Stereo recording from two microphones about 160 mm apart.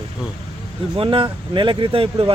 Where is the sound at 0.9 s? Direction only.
35° right (ahead or behind).